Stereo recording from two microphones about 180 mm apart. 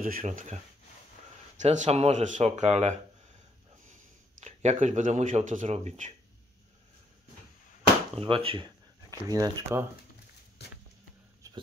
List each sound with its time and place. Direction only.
0.0 s speech: 50° right (ahead or behind)
1.6 s speech: 40° right (ahead or behind)
8.2 s speech: 30° right (ahead or behind)
9.3 s speech: 15° right (ahead or behind)
10.6 s a sound: 65° left (ahead or behind)
11.4 s a sound: 20° right (ahead or behind)